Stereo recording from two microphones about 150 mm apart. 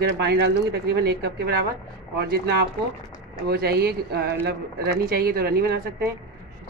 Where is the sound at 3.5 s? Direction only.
90° right.